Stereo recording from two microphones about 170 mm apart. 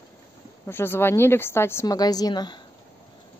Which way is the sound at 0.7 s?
15° left (ahead or behind).